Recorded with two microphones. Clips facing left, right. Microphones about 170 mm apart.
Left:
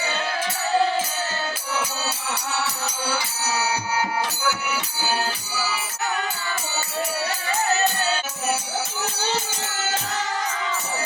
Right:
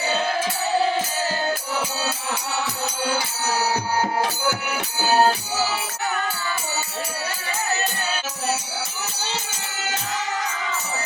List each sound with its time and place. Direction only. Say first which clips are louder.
5.0 s music: right 9 dB; 50° right (ahead or behind)